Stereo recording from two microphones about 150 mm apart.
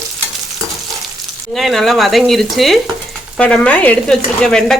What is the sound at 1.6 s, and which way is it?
Speech, centre (ahead or behind).